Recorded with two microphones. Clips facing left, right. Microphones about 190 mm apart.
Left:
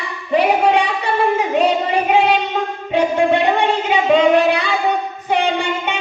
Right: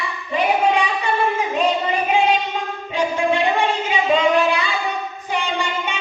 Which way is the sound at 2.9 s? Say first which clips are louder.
Left 5 dB; 65° left (ahead or behind).